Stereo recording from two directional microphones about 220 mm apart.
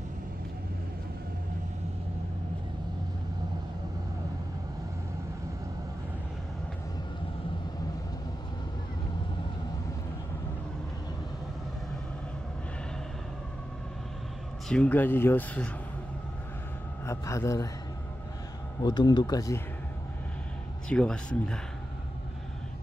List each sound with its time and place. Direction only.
14.7 s speech: 5° left (ahead or behind)
17.0 s a man's voice: 15° left (ahead or behind)
18.8 s speech: 20° left (ahead or behind)
20.9 s speech: 5° left (ahead or behind)